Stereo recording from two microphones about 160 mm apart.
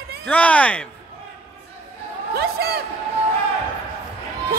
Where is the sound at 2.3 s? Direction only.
85° right.